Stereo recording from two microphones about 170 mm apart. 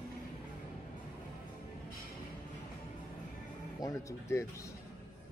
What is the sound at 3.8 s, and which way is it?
Music, 15° left (ahead or behind).